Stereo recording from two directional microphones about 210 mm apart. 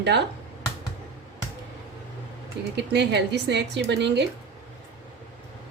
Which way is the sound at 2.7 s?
55° right (ahead or behind).